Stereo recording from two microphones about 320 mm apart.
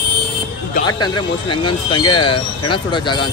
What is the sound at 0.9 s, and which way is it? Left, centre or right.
Speech, centre.